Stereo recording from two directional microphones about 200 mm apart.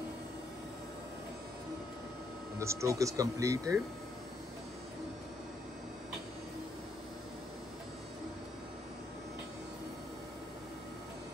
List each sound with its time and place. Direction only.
2.6 s speech: 15° right (ahead or behind)